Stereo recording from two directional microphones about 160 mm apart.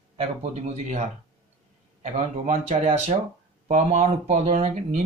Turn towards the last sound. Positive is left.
turn(degrees=-45)  # may be behind; listen again after turning